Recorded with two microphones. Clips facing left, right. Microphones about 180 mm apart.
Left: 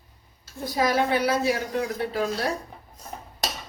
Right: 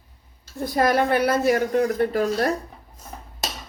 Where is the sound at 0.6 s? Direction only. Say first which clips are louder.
Right 3 dB; 55° right (ahead or behind).